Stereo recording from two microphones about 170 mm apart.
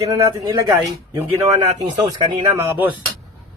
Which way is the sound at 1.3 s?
40° right (ahead or behind).